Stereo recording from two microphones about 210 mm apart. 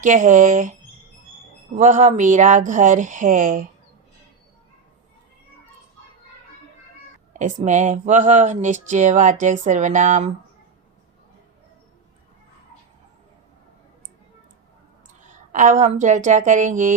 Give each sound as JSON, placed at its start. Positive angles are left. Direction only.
{"t": 0.0, "sound": "speech", "side_deg": -35}
{"t": 7.3, "sound": "speech", "side_deg": -35}
{"t": 15.3, "sound": "speech", "side_deg": -35}